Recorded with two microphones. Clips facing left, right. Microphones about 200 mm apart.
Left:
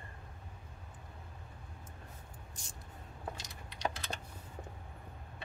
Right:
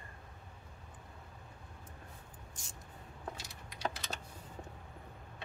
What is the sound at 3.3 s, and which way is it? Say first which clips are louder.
Typing: even; 5° right (ahead or behind).